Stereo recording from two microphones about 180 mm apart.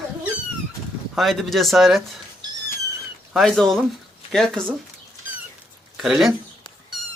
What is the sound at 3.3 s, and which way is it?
Speech, centre (ahead or behind).